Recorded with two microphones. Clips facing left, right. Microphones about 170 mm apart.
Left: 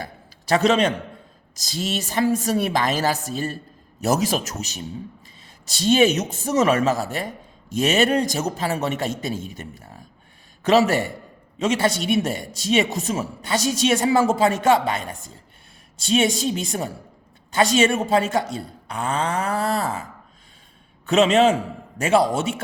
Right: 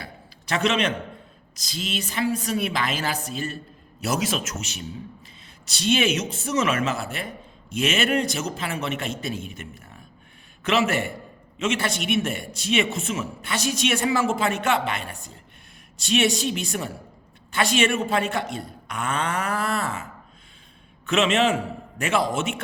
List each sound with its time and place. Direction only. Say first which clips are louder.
0.0 s a sound: left 5 dB; 35° left (ahead or behind)
1.8 s speech: left 4 dB; 40° left (ahead or behind)
10.7 s speech: left 5 dB; 35° left (ahead or behind)
16.4 s speech: left 3 dB; 35° left (ahead or behind)
21.1 s speech: left 5 dB; 35° left (ahead or behind)